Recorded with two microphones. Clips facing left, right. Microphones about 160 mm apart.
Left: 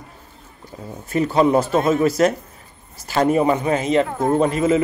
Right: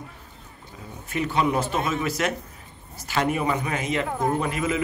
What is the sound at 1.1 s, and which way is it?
Speech, 35° left (ahead or behind).